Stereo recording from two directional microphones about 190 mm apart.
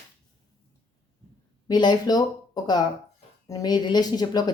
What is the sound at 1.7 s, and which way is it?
Speech, 20° left (ahead or behind).